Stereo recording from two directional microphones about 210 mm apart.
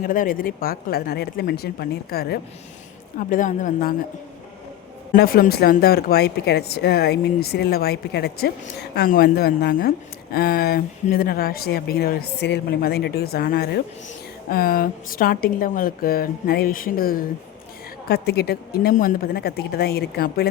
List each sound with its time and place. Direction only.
0.0 s speech: 40° left (ahead or behind)
5.1 s speech: 45° left (ahead or behind)